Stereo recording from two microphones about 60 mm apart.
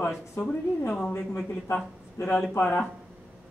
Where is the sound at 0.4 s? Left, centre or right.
Left.